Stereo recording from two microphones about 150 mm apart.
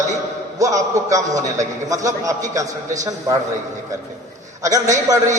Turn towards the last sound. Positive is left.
turn(degrees=-20)  # may be behind; listen again after turning